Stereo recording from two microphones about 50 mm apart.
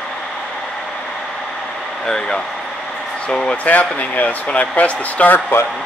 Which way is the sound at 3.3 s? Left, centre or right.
Centre.